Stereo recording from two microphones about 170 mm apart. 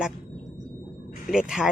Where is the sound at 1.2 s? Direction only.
Centre (ahead or behind).